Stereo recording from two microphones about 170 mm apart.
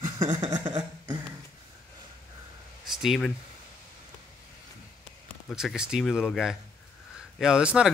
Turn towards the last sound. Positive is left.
turn(degrees=-5)  # may be behind; listen again after turning